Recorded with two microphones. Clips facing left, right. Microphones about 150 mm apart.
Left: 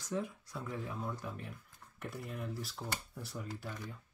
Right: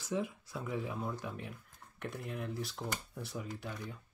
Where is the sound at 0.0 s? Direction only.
5° right (ahead or behind).